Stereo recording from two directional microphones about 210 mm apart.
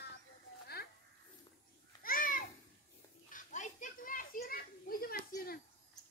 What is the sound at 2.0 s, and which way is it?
Babbling, 40° left (ahead or behind).